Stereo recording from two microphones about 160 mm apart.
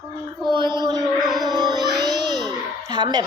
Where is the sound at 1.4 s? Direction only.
25° right (ahead or behind).